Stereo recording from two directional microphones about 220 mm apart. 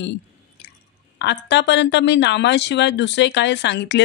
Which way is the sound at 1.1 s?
50° left (ahead or behind).